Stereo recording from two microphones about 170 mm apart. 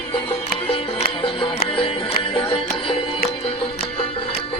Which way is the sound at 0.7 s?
35° left (ahead or behind).